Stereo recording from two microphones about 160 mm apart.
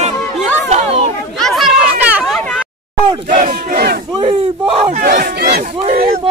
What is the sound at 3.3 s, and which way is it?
Battle cry, 50° right (ahead or behind).